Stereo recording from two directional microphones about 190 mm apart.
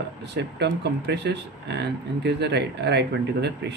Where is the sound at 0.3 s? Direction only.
65° right (ahead or behind).